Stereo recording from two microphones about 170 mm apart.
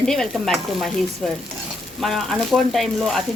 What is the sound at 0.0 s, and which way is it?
Speech, 5° left (ahead or behind).